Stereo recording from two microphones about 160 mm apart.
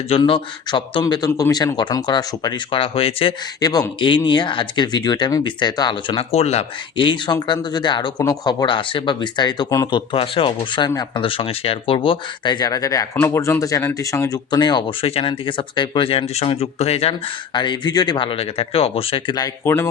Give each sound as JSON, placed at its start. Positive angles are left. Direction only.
{"t": 0.2, "sound": "speech", "side_deg": 30}
{"t": 3.6, "sound": "speech", "side_deg": 25}
{"t": 19.6, "sound": "speech", "side_deg": 15}